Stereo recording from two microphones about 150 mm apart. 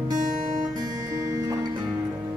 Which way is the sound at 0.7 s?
25° right (ahead or behind).